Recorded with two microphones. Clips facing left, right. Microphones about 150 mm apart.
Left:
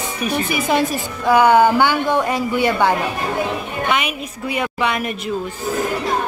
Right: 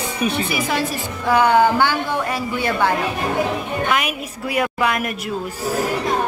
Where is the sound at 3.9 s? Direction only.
Centre (ahead or behind).